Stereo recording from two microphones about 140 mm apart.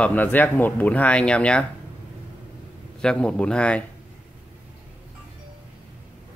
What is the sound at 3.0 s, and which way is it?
Speech, 5° left (ahead or behind).